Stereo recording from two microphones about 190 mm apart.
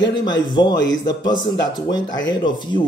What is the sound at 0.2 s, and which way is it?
Speech, 20° left (ahead or behind).